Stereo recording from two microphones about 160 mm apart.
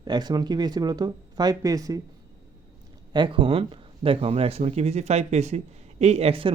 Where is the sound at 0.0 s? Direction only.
25° right (ahead or behind).